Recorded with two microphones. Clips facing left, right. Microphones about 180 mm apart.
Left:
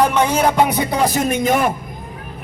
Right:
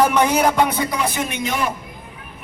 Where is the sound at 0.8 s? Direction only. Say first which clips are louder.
Left 5 dB; 30° left (ahead or behind); by 1.7 s 50° left (ahead or behind).